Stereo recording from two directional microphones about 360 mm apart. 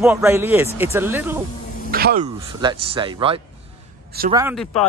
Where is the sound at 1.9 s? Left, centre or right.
Right.